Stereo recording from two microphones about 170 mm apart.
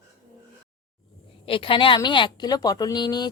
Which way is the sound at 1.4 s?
30° left (ahead or behind).